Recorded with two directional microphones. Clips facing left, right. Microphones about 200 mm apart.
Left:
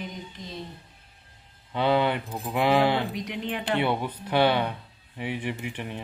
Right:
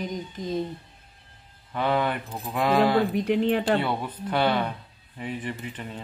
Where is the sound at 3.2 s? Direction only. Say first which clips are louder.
Right 9 dB; 50° right (ahead or behind).